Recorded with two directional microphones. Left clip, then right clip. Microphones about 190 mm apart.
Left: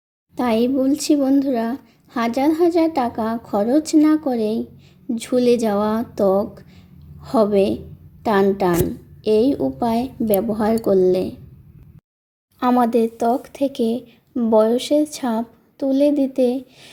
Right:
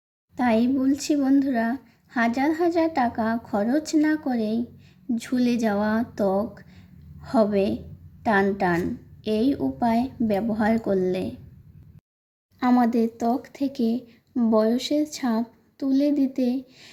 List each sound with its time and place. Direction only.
0.3 s speech: 15° left (ahead or behind)
12.5 s speech: 10° left (ahead or behind)